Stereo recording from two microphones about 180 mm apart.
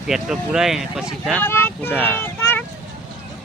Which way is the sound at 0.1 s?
5° right (ahead or behind).